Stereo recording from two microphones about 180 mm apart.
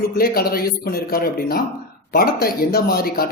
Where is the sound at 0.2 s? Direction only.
55° left (ahead or behind).